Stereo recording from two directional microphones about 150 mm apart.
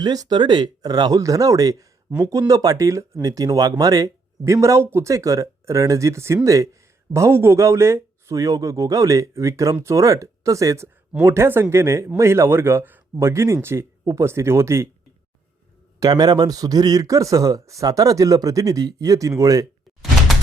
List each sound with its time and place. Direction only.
0.0 s speech: 25° right (ahead or behind)
16.0 s speech: 25° right (ahead or behind)